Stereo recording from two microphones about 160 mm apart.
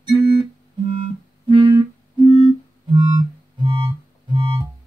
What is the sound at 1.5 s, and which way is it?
Music, 30° right (ahead or behind).